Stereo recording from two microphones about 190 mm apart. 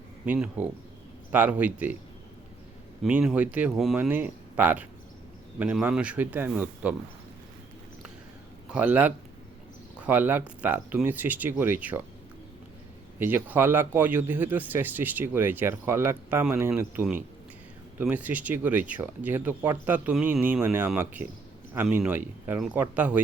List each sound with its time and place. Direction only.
0.3 s a man's voice: 10° right (ahead or behind)
3.0 s a man's voice: 5° right (ahead or behind)
8.7 s a man's voice: 10° right (ahead or behind)
13.1 s a man's voice: 10° right (ahead or behind)